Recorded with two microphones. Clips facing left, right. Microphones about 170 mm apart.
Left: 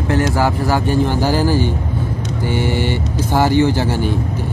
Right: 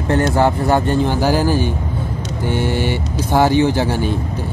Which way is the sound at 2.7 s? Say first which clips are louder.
Even; 15° right (ahead or behind).